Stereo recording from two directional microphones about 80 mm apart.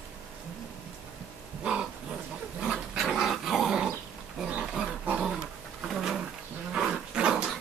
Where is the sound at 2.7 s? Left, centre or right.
Centre.